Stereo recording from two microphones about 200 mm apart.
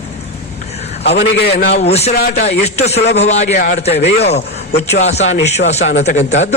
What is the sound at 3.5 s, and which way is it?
Speech, 45° left (ahead or behind).